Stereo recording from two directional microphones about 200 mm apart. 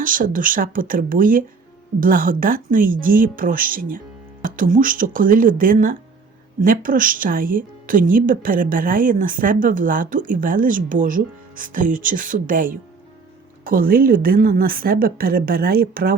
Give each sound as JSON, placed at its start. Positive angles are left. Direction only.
{"t": 0.0, "sound": "speech", "side_deg": -45}